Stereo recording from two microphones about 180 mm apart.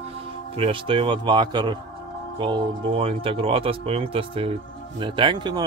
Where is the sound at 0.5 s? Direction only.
30° right (ahead or behind).